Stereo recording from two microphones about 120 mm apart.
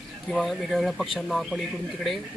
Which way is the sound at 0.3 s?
Centre (ahead or behind).